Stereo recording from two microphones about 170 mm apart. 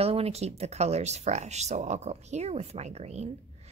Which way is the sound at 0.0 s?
35° right (ahead or behind).